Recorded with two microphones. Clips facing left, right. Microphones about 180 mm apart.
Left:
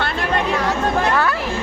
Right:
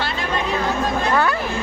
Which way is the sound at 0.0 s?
60° left (ahead or behind).